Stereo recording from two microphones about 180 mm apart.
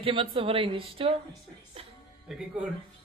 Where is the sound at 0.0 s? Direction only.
30° right (ahead or behind).